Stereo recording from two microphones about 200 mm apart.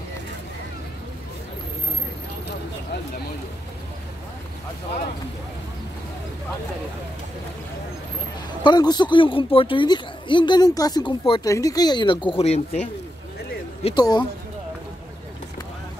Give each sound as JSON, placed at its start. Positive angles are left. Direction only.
{"t": 8.6, "sound": "speech", "side_deg": 20}
{"t": 13.8, "sound": "speech", "side_deg": 20}